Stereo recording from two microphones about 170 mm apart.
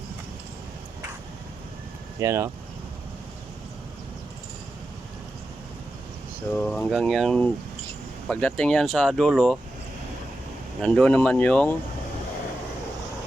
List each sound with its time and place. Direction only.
2.2 s speech: 15° right (ahead or behind)
6.5 s speech: 10° left (ahead or behind)
10.8 s speech: 5° left (ahead or behind)